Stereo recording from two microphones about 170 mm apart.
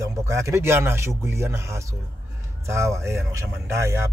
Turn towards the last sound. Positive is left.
turn(degrees=-15)  # may be behind; listen again after turning